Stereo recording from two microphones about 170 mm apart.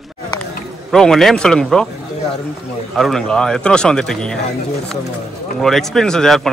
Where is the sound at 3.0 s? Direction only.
Centre (ahead or behind).